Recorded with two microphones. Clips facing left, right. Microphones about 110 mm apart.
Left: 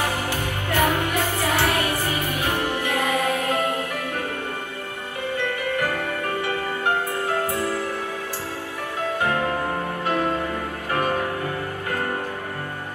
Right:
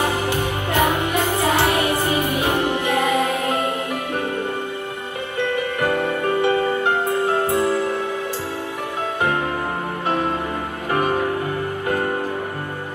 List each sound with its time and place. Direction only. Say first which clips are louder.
0.0 s music: right 4 dB; 20° right (ahead or behind)
5.8 s music: right 5 dB; 25° right (ahead or behind)
10.0 s music: right 2 dB; 20° right (ahead or behind)